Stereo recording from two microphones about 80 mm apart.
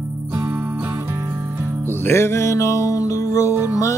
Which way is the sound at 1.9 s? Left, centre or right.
Left.